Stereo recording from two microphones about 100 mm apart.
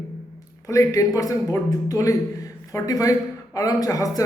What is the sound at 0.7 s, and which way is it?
Speech, 35° left (ahead or behind).